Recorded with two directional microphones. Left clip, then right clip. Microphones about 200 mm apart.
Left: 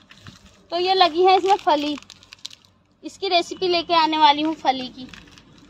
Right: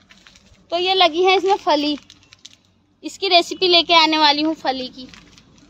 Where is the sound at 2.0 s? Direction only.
55° left (ahead or behind).